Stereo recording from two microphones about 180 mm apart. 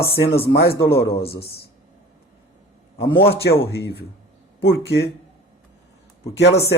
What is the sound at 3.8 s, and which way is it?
Speech, 65° left (ahead or behind).